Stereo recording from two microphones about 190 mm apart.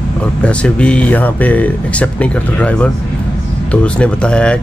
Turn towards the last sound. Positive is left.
turn(degrees=5)  # may be behind; listen again after turning